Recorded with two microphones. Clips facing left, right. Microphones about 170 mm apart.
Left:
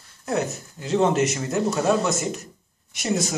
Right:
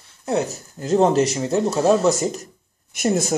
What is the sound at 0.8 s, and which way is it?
Speech, 40° right (ahead or behind).